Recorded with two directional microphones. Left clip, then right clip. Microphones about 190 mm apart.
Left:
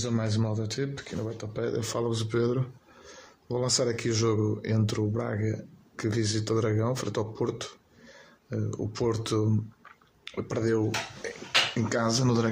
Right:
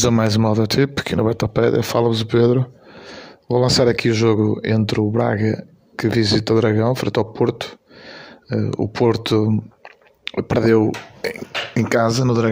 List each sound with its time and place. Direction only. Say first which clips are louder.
0.2 s speech: right 14 dB; 50° right (ahead or behind)
11.9 s speech: right 10 dB; 35° right (ahead or behind)